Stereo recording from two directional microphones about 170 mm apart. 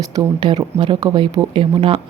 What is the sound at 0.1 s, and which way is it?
Speech, 25° right (ahead or behind).